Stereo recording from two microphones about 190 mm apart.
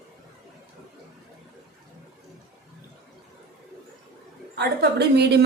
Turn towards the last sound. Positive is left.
turn(degrees=-60)  # may be behind; listen again after turning